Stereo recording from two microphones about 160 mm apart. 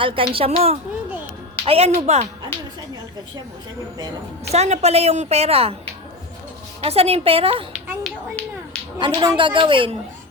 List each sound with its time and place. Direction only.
0.0 s a woman's voice: 35° right (ahead or behind)
3.9 s a woman's voice: 25° right (ahead or behind)
4.5 s a woman's voice: 45° right (ahead or behind)
6.8 s a woman's voice: 40° right (ahead or behind)
8.0 s speech: 5° left (ahead or behind)
9.0 s a woman's voice: 30° right (ahead or behind)